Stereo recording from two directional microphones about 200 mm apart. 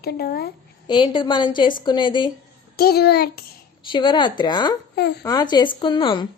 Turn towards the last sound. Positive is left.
turn(degrees=25)  # may be behind; listen again after turning